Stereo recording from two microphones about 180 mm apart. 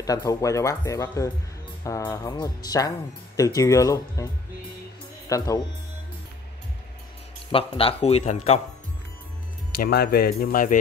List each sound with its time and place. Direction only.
0.0 s speech: 20° left (ahead or behind)
5.3 s speech: 20° left (ahead or behind)
7.5 s a man's voice: 30° left (ahead or behind)
9.8 s speech: 60° left (ahead or behind)